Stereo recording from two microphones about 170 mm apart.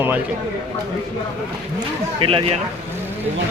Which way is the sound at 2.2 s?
30° right (ahead or behind).